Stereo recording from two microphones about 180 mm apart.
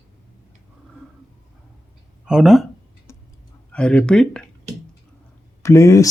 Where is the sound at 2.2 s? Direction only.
5° right (ahead or behind).